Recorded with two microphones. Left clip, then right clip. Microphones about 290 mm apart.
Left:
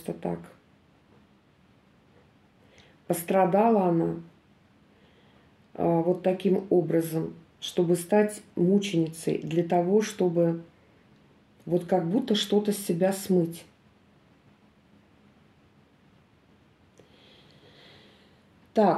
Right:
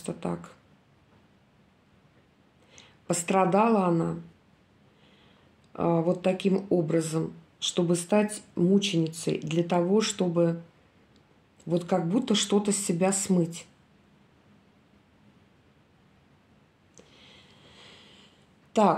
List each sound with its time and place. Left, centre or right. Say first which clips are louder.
0.0 s speech: left 1 dB; right
2.7 s speech: left 1 dB; right
5.8 s speech: left 1 dB; right
11.7 s speech: left 1 dB; right
17.4 s a sound: right 1 dB; right
18.7 s speech: even; right